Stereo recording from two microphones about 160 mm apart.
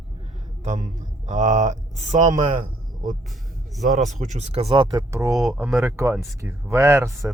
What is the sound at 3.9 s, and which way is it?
Speech, 50° right (ahead or behind).